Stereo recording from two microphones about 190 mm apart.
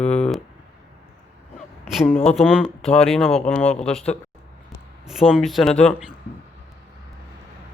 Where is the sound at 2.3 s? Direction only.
Centre (ahead or behind).